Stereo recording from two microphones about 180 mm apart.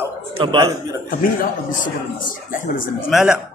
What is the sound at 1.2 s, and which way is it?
Speech, 50° left (ahead or behind).